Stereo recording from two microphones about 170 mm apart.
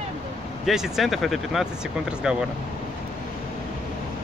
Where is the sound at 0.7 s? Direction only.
Centre (ahead or behind).